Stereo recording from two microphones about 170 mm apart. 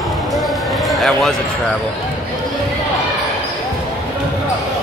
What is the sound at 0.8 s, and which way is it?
Basketball bounce, centre (ahead or behind).